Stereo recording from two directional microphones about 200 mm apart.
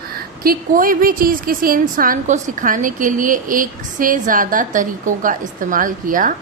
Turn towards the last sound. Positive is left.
turn(degrees=-40)  # may be behind; listen again after turning